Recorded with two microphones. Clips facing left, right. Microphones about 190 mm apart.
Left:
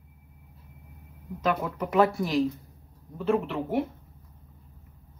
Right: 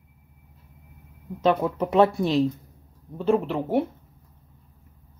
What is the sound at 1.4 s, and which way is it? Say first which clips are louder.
Speech: right 6 dB; 30° right (ahead or behind).